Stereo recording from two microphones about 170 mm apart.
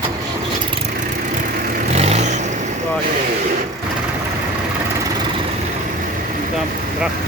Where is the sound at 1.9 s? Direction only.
40° right (ahead or behind).